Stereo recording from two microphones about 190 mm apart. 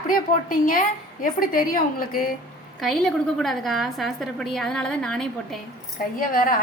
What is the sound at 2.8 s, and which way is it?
A woman's voice, centre (ahead or behind).